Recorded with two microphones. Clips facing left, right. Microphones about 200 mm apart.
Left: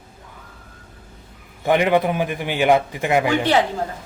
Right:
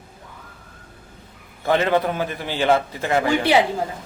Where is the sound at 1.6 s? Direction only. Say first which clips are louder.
Left 2 dB; 15° left (ahead or behind).